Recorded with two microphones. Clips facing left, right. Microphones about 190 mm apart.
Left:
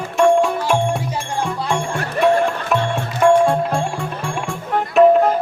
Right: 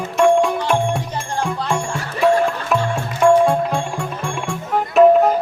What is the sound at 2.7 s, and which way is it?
Music, centre (ahead or behind).